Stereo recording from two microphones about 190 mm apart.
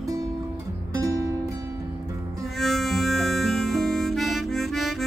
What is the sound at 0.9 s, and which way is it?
Music, 20° right (ahead or behind).